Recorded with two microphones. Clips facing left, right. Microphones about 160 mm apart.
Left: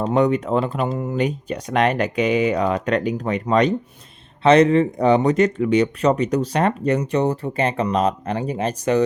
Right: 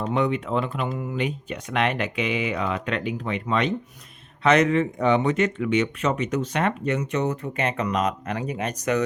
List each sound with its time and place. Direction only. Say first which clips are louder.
0.0 s speech: left 6 dB; 40° left (ahead or behind)